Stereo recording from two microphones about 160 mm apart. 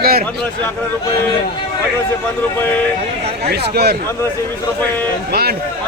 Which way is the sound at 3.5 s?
85° right.